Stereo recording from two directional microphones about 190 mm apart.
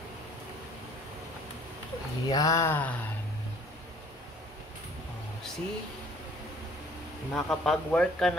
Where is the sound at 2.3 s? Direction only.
20° left (ahead or behind).